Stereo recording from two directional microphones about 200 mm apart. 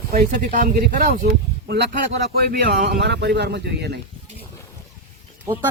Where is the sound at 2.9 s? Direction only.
55° right (ahead or behind).